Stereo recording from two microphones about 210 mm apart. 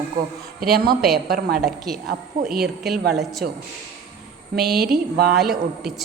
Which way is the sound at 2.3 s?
40° right (ahead or behind).